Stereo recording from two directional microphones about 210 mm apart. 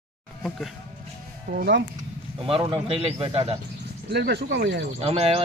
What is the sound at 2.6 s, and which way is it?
Speech, 25° right (ahead or behind).